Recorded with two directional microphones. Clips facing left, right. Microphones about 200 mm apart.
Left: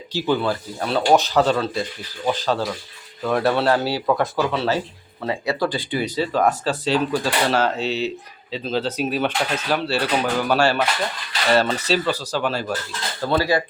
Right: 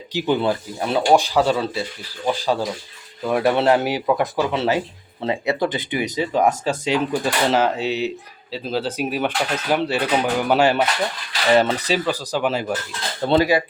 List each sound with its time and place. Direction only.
0.1 s speech: 20° right (ahead or behind)